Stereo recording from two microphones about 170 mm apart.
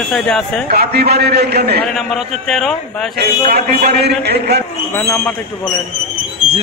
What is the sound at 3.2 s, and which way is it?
A man's voice, 70° right (ahead or behind).